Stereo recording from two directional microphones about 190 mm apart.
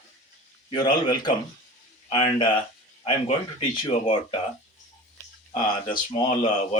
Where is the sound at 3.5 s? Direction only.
30° left (ahead or behind).